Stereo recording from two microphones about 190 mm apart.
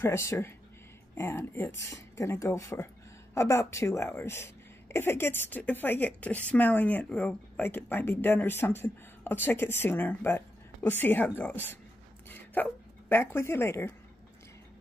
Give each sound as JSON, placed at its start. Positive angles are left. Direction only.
{"t": 0.0, "sound": "speech", "side_deg": 15}
{"t": 12.3, "sound": "dog", "side_deg": 10}
{"t": 13.1, "sound": "speech", "side_deg": 10}